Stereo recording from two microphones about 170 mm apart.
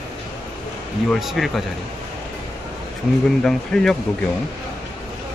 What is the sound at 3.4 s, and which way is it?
Speech, 5° left (ahead or behind).